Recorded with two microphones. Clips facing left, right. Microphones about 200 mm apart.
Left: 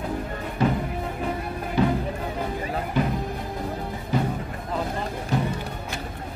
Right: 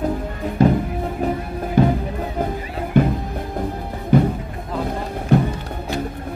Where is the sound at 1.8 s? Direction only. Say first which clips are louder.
Right 6 dB; 50° right (ahead or behind).